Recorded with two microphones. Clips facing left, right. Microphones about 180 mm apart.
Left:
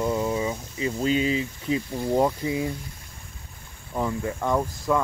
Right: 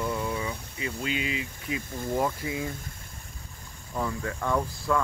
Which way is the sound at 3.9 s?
20° left (ahead or behind).